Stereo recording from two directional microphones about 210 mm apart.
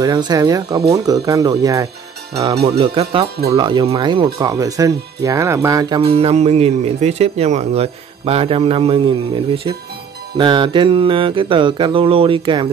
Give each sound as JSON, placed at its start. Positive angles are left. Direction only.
{"t": 0.0, "sound": "speech", "side_deg": -20}